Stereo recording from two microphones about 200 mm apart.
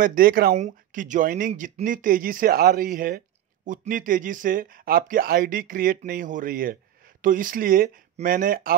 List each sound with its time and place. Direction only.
0.0 s speech: 45° right (ahead or behind)